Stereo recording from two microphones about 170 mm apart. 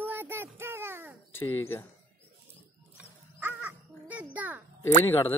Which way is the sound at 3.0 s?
10° right (ahead or behind).